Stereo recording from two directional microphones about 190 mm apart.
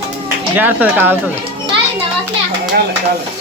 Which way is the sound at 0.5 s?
10° right (ahead or behind).